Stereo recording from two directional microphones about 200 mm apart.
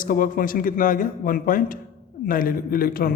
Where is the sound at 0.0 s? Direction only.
45° left (ahead or behind).